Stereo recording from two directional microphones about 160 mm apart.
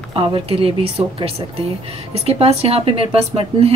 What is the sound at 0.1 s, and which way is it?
Speech, 30° right (ahead or behind).